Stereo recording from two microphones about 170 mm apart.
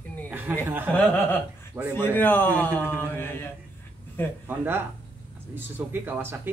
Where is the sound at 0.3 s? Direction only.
10° right (ahead or behind).